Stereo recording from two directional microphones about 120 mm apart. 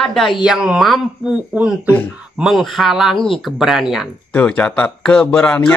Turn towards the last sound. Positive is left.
turn(degrees=10)  # may be behind; listen again after turning